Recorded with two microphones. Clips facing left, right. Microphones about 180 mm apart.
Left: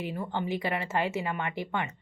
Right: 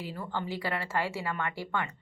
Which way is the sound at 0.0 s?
20° left (ahead or behind).